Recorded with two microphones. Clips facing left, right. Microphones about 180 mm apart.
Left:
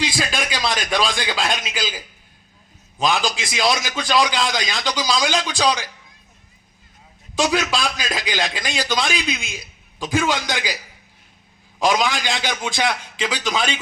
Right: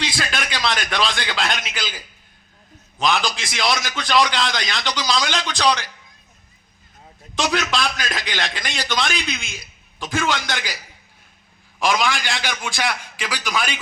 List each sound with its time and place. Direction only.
0.3 s a sound: 10° left (ahead or behind)
1.0 s a man's voice: 10° left (ahead or behind)
3.0 s a man's voice: 10° left (ahead or behind)
7.3 s a man's voice: 10° left (ahead or behind)
11.8 s a man's voice: 20° left (ahead or behind)